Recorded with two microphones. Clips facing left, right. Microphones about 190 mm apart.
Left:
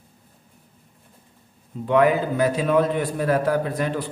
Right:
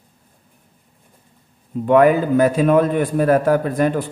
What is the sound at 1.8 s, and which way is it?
A man's voice, 50° right (ahead or behind).